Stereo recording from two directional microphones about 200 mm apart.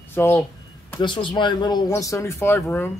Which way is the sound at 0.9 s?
25° left (ahead or behind).